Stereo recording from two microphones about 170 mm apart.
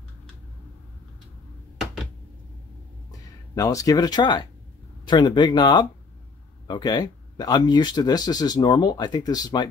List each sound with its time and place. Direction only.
3.1 s speech: 20° left (ahead or behind)